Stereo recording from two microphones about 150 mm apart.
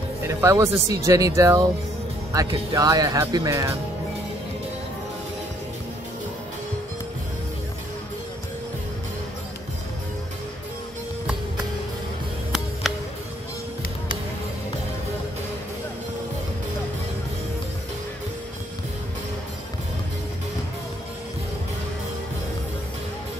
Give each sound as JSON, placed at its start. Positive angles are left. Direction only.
{"t": 0.3, "sound": "speech", "side_deg": -20}
{"t": 12.8, "sound": "music", "side_deg": 0}